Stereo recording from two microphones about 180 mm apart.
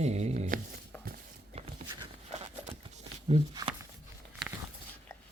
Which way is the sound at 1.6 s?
35° right (ahead or behind).